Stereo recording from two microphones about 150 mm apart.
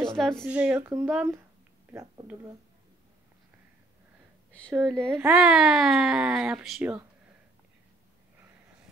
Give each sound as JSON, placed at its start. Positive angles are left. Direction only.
{"t": 0.2, "sound": "speech", "side_deg": 5}
{"t": 0.5, "sound": "speech", "side_deg": -10}
{"t": 4.5, "sound": "a sound", "side_deg": 10}
{"t": 4.8, "sound": "speech", "side_deg": 5}